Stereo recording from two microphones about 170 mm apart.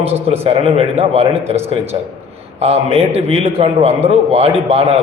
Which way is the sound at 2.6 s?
40° right (ahead or behind).